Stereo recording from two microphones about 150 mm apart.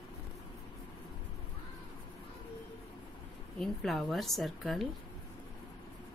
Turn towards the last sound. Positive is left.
turn(degrees=0)  # may be behind; listen again after turning